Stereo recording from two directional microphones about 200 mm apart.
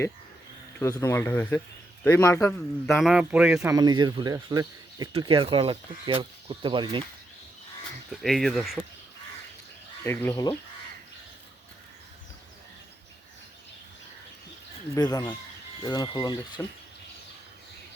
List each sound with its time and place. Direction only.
0.8 s speech: 15° left (ahead or behind)
2.9 s speech: centre (ahead or behind)
3.8 s speech: 20° right (ahead or behind)
8.1 s speech: centre (ahead or behind)
10.0 s speech: 10° left (ahead or behind)
14.9 s speech: 20° left (ahead or behind)